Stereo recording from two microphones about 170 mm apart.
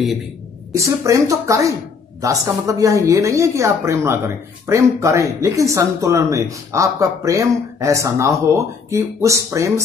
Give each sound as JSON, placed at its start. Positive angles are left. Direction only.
{"t": 0.7, "sound": "speech", "side_deg": -20}